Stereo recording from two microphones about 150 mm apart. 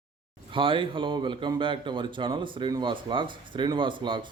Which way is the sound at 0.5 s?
35° right (ahead or behind).